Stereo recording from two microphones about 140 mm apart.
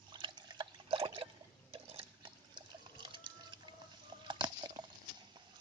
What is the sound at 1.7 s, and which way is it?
Water, 35° right (ahead or behind).